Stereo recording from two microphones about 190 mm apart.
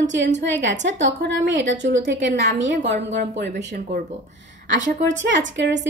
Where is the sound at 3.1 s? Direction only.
65° right (ahead or behind).